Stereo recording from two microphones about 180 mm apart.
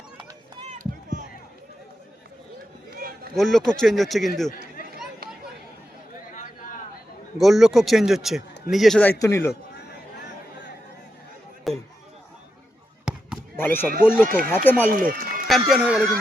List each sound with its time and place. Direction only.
0.5 s run: 40° right (ahead or behind)
2.9 s a sound: 55° right (ahead or behind)
3.3 s speech: centre (ahead or behind)
7.3 s speech: centre (ahead or behind); by 9.5 s 15° left (ahead or behind)
11.7 s a sound: centre (ahead or behind)
13.6 s speech: 10° left (ahead or behind)
14.3 s speech: 50° right (ahead or behind)
14.5 s speech: 10° left (ahead or behind)
14.8 s speech: 50° right (ahead or behind)
15.4 s speech: centre (ahead or behind)